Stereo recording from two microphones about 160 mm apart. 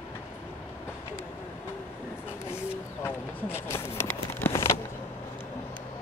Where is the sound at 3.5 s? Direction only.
15° left (ahead or behind).